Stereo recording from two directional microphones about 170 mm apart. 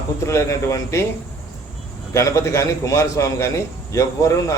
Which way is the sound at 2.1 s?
15° left (ahead or behind).